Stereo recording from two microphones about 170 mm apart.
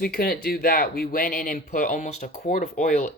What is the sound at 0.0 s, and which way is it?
Speech, 60° left (ahead or behind).